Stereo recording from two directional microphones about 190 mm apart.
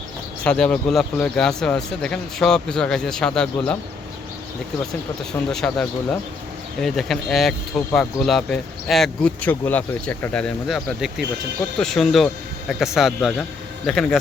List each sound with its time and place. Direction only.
0.4 s speech: 5° left (ahead or behind)
5.5 s speech: 5° left (ahead or behind)